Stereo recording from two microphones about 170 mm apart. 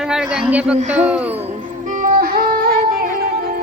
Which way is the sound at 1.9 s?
50° right (ahead or behind).